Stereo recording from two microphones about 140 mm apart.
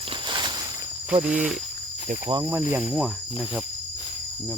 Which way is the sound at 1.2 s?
10° right (ahead or behind).